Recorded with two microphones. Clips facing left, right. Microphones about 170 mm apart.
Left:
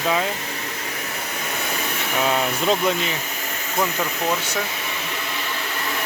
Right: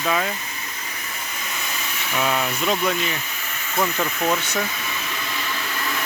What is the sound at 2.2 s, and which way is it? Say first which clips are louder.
Speech: left 2 dB; 25° left (ahead or behind).